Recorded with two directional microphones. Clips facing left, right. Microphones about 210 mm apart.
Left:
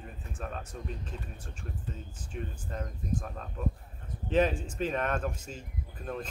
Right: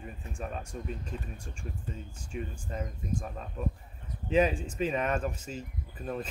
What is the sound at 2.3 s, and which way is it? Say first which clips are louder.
Speech: right 2 dB; 5° right (ahead or behind).